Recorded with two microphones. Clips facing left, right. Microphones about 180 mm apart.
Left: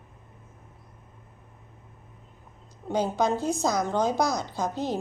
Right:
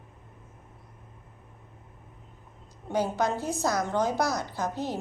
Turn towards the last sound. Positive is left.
turn(degrees=15)  # may be behind; listen again after turning